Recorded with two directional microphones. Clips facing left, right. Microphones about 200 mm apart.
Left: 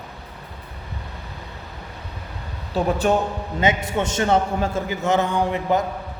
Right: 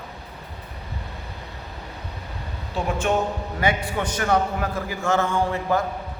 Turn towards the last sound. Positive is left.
turn(degrees=20)  # may be behind; listen again after turning